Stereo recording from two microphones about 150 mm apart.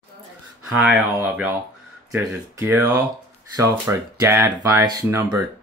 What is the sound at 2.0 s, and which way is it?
Speech, 20° right (ahead or behind).